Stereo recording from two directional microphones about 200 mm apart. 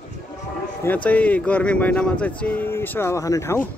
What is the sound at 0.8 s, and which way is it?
Speech, 10° left (ahead or behind).